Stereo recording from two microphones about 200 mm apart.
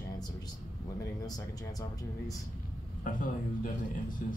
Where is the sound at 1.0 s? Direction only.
20° left (ahead or behind).